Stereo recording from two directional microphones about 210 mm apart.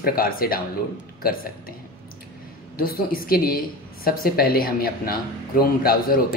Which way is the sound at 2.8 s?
45° left (ahead or behind).